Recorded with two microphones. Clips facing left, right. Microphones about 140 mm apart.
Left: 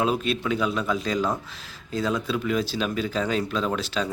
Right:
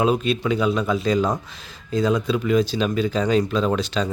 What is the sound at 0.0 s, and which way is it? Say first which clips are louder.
Speech: right 4 dB; centre (ahead or behind).